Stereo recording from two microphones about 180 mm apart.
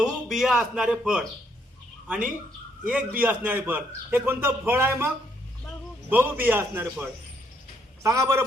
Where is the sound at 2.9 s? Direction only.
10° right (ahead or behind).